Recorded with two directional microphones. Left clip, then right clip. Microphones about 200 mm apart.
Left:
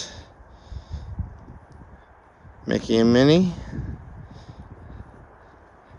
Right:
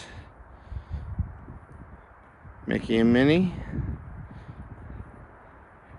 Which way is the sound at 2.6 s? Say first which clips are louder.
Left 4 dB; 10° left (ahead or behind).